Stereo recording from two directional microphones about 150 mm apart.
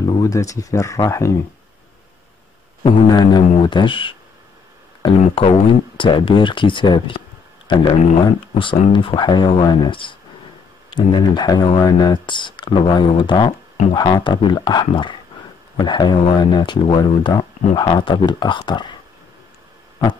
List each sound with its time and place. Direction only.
0.0 s speech: 25° left (ahead or behind)
3.1 s speech: 30° left (ahead or behind)